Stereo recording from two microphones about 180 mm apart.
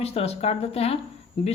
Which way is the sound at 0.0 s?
35° left (ahead or behind).